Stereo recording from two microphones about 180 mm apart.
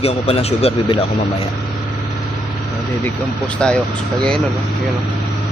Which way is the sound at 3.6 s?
5° left (ahead or behind).